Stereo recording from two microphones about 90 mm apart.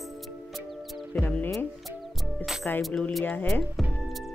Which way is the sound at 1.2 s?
20° left (ahead or behind).